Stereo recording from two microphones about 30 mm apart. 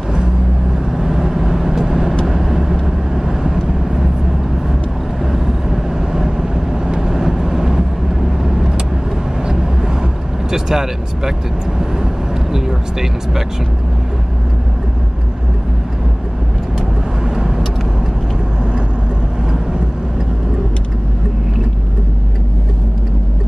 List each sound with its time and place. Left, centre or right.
0.9 s vehicle: centre
5.2 s vehicle: centre
10.5 s speech: centre
12.5 s speech: centre